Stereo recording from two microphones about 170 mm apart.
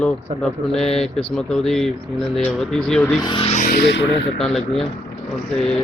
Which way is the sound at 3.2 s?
30° left (ahead or behind).